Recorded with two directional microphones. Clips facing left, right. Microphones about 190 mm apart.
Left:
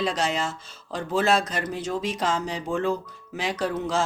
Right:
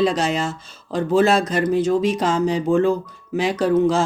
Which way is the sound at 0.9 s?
40° right (ahead or behind).